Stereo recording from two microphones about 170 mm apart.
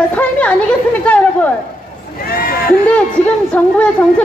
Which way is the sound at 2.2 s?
60° left (ahead or behind).